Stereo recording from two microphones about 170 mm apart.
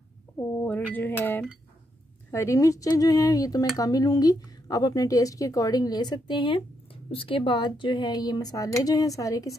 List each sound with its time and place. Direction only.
0.4 s speech: 10° left (ahead or behind)